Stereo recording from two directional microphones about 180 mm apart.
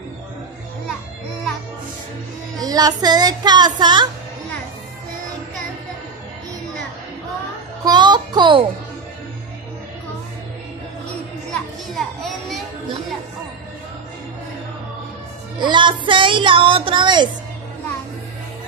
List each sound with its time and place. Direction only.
2.6 s speech: 20° right (ahead or behind)
7.8 s music: 25° right (ahead or behind)
11.5 s children playing: centre (ahead or behind)
15.6 s speech: 25° right (ahead or behind)